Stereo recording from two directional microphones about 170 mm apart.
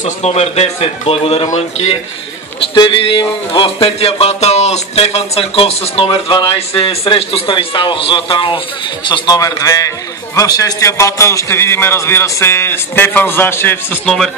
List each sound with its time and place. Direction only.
0.0 s a man's voice: 40° left (ahead or behind); by 14.1 s 10° left (ahead or behind)